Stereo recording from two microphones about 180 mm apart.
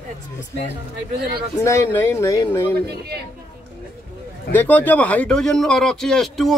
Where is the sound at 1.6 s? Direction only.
15° left (ahead or behind).